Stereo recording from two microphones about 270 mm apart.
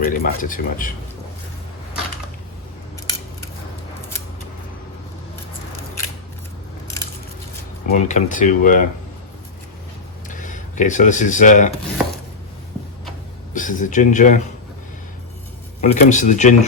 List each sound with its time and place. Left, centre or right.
0.0 s speech: left
7.9 s speech: left
10.2 s speech: left
13.5 s speech: left
15.8 s speech: left